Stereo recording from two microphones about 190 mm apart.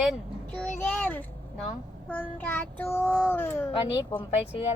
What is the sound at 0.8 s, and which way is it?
A child's voice, 10° left (ahead or behind).